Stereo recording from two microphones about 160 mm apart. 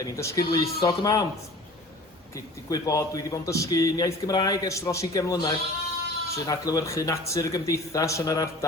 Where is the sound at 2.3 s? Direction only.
20° left (ahead or behind).